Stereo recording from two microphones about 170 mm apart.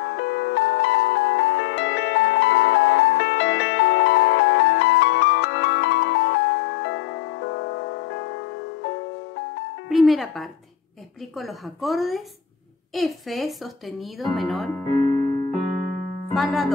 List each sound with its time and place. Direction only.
0.0 s music: 90° left
9.8 s music: centre (ahead or behind)
11.3 s speech: centre (ahead or behind)
15.0 s music: 25° left (ahead or behind)
16.3 s speech: centre (ahead or behind)